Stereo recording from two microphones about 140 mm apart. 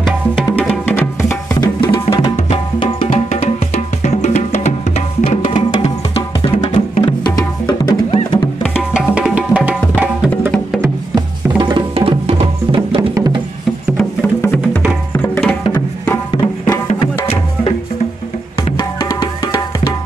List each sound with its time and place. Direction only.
0.6 s music: 15° left (ahead or behind)
1.5 s music: 30° left (ahead or behind)
2.3 s music: 40° left (ahead or behind)
6.4 s music: 40° left (ahead or behind)
8.7 s music: 5° right (ahead or behind)
10.8 s music: 30° right (ahead or behind)
11.9 s music: 40° right (ahead or behind)
13.1 s music: 30° right (ahead or behind)
13.9 s music: 10° left (ahead or behind)
16.3 s music: 35° left (ahead or behind)